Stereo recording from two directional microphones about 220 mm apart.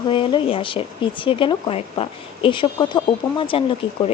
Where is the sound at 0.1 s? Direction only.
20° left (ahead or behind).